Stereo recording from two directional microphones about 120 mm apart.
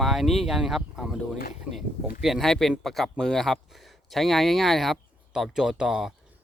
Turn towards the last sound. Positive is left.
turn(degrees=-5)  # may be behind; listen again after turning